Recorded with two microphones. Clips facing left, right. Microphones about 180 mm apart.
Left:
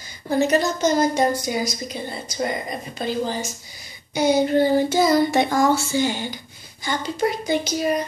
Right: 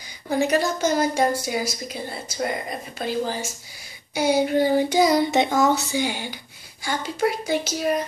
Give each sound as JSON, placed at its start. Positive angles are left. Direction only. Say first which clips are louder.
{"t": 0.3, "sound": "child singing", "louder": "left 2 dB", "side_deg": -10}
{"t": 2.4, "sound": "speech", "louder": "left 1 dB", "side_deg": -5}
{"t": 4.1, "sound": "child singing", "louder": "left 2 dB", "side_deg": -10}
{"t": 6.8, "sound": "speech", "louder": "left 1 dB", "side_deg": -10}